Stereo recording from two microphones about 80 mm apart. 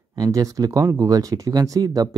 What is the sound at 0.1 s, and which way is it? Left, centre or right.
Speech, right.